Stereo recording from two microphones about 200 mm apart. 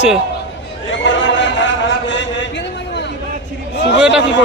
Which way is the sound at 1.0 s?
65° left (ahead or behind).